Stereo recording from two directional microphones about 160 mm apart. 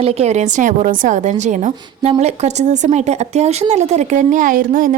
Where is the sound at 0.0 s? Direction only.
40° right (ahead or behind).